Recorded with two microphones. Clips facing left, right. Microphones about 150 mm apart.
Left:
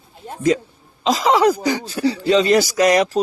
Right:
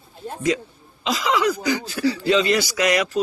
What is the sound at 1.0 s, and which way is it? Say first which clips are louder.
Speech: left 6 dB; 35° left (ahead or behind).